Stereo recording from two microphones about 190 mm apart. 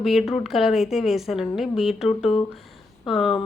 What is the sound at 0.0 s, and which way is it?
A woman's voice, centre (ahead or behind).